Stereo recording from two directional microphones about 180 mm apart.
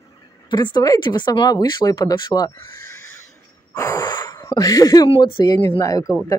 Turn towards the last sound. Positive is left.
turn(degrees=20)  # may be behind; listen again after turning